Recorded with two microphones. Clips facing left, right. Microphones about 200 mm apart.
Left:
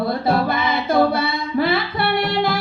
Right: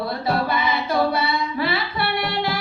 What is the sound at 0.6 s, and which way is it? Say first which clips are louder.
Singing: left 4 dB; 50° left (ahead or behind).